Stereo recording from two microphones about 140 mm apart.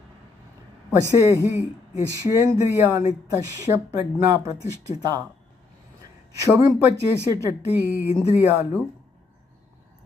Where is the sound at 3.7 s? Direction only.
25° right (ahead or behind).